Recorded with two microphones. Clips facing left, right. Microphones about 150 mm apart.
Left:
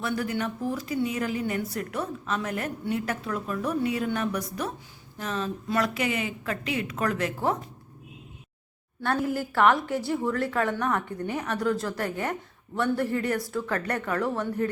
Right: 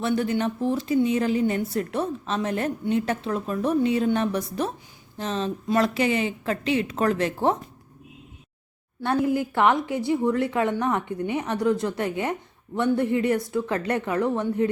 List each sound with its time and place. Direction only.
0.0 s a woman's voice: 25° right (ahead or behind)
9.3 s a woman's voice: 20° right (ahead or behind)